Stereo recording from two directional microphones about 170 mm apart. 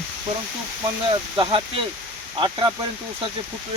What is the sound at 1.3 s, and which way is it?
Speech, 30° right (ahead or behind).